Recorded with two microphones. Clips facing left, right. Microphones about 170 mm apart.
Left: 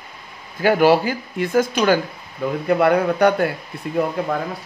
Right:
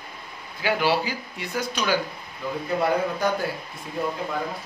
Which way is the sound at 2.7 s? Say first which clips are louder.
Left 7 dB; 65° left (ahead or behind).